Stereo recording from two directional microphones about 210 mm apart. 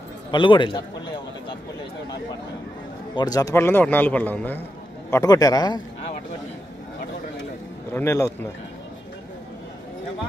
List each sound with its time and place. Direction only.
0.3 s a man's voice: 25° left (ahead or behind)
3.2 s speech: 15° left (ahead or behind)
7.9 s speech: 15° left (ahead or behind)